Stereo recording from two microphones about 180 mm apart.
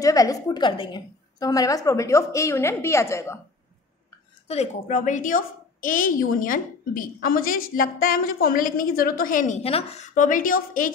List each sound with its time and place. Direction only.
0.0 s a woman's voice: 20° left (ahead or behind)
4.5 s a woman's voice: 40° left (ahead or behind)